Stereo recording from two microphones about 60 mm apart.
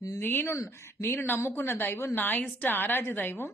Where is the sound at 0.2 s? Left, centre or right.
Left.